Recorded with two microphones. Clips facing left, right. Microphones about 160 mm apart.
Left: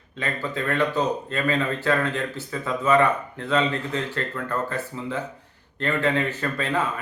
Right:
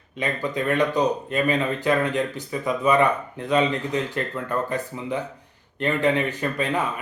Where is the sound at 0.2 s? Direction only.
15° right (ahead or behind).